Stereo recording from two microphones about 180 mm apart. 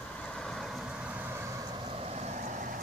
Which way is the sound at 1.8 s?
35° right (ahead or behind).